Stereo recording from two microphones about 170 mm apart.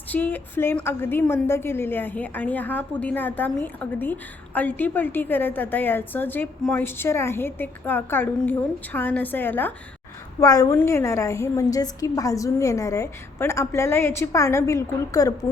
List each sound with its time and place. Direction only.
0.1 s a woman's voice: 10° left (ahead or behind)